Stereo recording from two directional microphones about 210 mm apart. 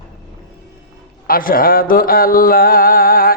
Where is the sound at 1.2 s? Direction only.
45° left (ahead or behind).